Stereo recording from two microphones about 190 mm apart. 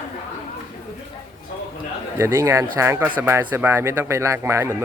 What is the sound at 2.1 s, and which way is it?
Speech, 15° right (ahead or behind).